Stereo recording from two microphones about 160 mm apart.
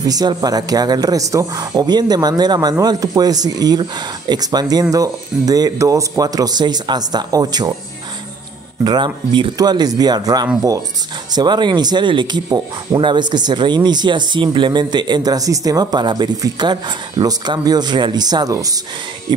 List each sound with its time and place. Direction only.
0.0 s speech: 25° right (ahead or behind)
8.8 s speech: 30° right (ahead or behind)